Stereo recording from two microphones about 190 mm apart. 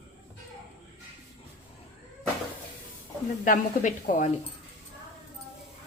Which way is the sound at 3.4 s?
45° left (ahead or behind).